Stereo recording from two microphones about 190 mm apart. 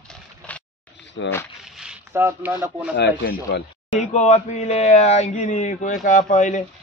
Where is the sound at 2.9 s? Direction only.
65° left (ahead or behind).